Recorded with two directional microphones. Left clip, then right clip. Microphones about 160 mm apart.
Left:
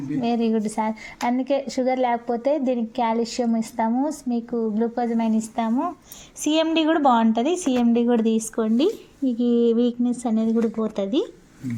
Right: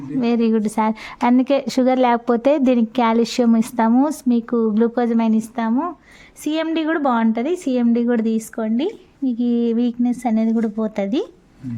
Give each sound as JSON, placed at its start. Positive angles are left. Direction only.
{"t": 0.2, "sound": "a woman's voice", "side_deg": -45}
{"t": 6.4, "sound": "a woman's voice", "side_deg": -30}
{"t": 9.2, "sound": "a woman's voice", "side_deg": -35}